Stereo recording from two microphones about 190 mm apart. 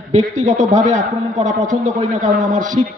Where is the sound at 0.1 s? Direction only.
40° right (ahead or behind).